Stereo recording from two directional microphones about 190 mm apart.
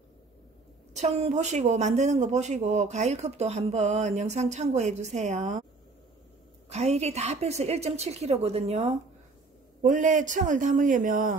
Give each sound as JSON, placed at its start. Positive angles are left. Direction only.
{"t": 0.9, "sound": "speech", "side_deg": -35}
{"t": 6.7, "sound": "speech", "side_deg": -35}